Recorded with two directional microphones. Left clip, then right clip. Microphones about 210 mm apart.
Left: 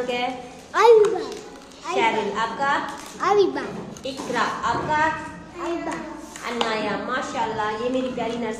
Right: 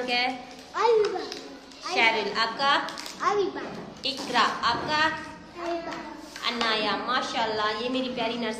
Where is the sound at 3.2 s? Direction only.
25° left (ahead or behind).